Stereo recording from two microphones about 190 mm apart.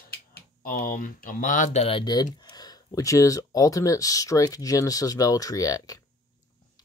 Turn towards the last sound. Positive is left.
turn(degrees=20)  # may be behind; listen again after turning